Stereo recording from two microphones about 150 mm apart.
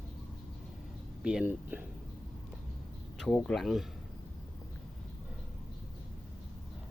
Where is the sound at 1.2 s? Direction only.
5° right (ahead or behind).